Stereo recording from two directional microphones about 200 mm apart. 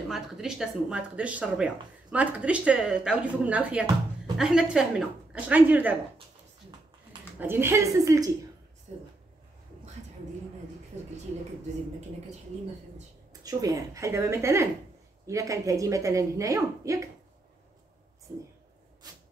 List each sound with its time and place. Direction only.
0.1 s speech: centre (ahead or behind)
7.3 s a woman's voice: 10° right (ahead or behind)
13.3 s a woman's voice: 20° right (ahead or behind)